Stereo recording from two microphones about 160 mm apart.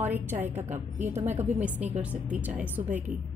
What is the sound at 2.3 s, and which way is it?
Speech, 10° right (ahead or behind).